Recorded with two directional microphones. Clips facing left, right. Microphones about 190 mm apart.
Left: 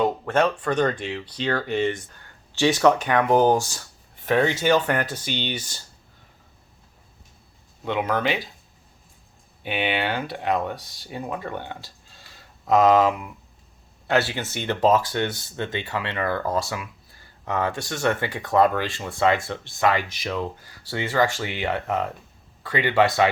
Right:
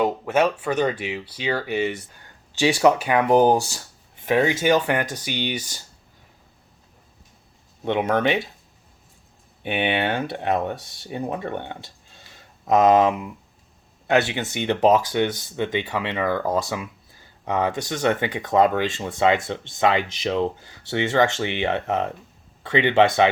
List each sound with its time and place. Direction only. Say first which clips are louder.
0.0 s speech: right 1 dB; 5° right (ahead or behind)
7.9 s speech: right 3 dB; 25° right (ahead or behind)
9.6 s speech: right 2 dB; 25° right (ahead or behind)